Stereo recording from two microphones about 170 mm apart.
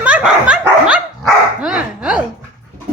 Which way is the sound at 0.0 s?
5° right (ahead or behind).